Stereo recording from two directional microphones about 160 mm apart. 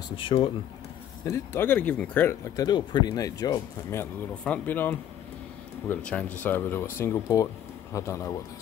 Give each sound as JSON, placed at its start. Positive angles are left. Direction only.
{"t": 0.1, "sound": "speech", "side_deg": 35}
{"t": 1.2, "sound": "speech", "side_deg": 15}
{"t": 2.5, "sound": "speech", "side_deg": 25}